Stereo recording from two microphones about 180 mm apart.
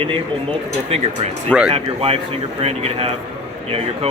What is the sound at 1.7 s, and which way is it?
A man's voice, 35° right (ahead or behind).